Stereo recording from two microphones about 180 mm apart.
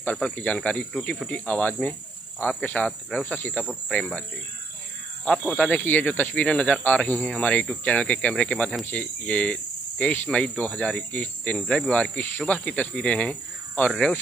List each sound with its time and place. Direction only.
0.0 s speech: 5° left (ahead or behind)
5.2 s speech: centre (ahead or behind)